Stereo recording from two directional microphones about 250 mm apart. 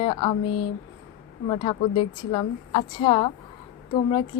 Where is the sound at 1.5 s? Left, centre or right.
Centre.